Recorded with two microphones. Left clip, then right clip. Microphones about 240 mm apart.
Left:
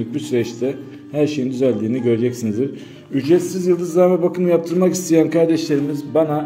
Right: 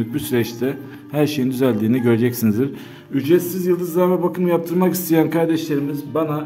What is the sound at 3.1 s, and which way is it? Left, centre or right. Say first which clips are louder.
A man's voice: left 1 dB; centre.